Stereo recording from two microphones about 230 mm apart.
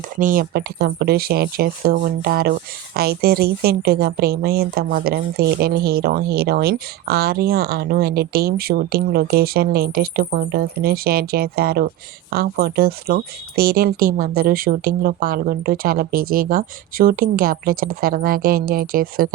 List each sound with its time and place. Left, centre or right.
0.2 s speech: right